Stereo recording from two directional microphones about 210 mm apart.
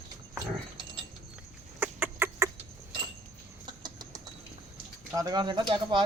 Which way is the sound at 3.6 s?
20° right (ahead or behind).